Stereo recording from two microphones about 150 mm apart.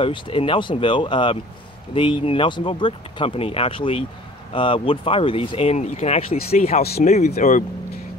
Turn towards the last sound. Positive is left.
turn(degrees=50)  # may be behind; listen again after turning